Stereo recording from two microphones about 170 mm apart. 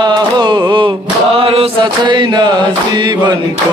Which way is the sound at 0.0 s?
25° right (ahead or behind).